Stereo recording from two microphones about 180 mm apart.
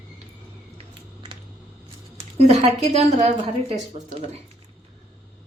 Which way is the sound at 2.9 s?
35° right (ahead or behind).